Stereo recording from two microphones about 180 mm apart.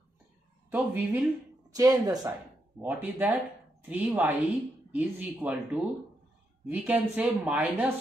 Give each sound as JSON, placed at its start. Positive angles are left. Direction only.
{"t": 0.7, "sound": "a woman's voice", "side_deg": -10}
{"t": 2.8, "sound": "a woman's voice", "side_deg": -10}